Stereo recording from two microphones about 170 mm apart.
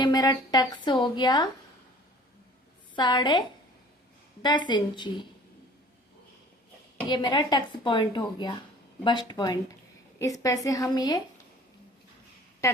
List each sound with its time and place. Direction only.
0.0 s a woman's voice: 20° left (ahead or behind)
2.9 s a woman's voice: 25° left (ahead or behind)
4.4 s a woman's voice: 25° left (ahead or behind)
7.1 s a woman's voice: 25° left (ahead or behind)
12.6 s a woman's voice: 20° left (ahead or behind)